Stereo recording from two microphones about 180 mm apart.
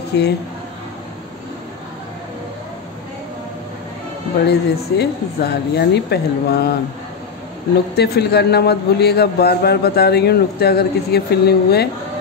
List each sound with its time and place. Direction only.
0.1 s speech: 65° left (ahead or behind)
4.5 s a man's voice: 65° left (ahead or behind)
7.9 s a man's voice: 65° left (ahead or behind)